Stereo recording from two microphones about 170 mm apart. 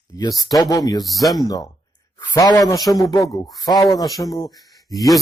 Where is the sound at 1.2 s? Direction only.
Centre (ahead or behind).